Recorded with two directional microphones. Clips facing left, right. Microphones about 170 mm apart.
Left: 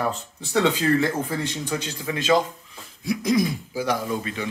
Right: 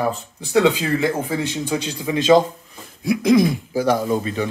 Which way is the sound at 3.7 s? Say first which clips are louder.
Right 6 dB; 40° right (ahead or behind).